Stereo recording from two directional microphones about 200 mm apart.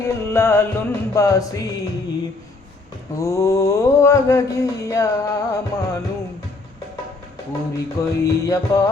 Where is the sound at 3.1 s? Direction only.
15° left (ahead or behind).